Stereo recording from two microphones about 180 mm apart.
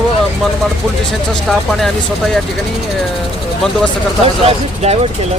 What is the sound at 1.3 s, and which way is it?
Speech, centre (ahead or behind).